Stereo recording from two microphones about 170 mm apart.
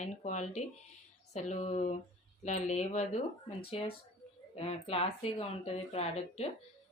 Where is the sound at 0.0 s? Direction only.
45° left (ahead or behind).